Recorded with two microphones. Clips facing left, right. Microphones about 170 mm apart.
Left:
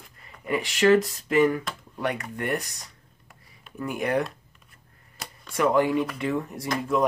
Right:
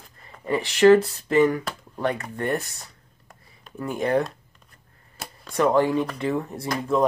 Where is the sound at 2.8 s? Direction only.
35° right (ahead or behind).